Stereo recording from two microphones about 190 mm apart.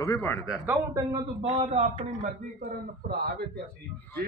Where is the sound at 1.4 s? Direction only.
35° right (ahead or behind).